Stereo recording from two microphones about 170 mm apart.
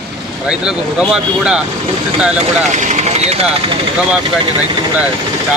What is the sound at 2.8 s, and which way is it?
Speech, 45° right (ahead or behind).